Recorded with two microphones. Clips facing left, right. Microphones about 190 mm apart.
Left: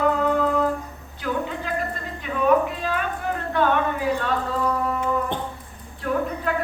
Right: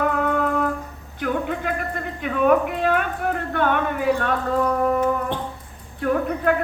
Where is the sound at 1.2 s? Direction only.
55° right (ahead or behind).